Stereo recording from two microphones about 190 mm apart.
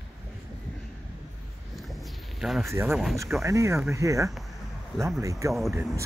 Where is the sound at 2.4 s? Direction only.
Centre (ahead or behind).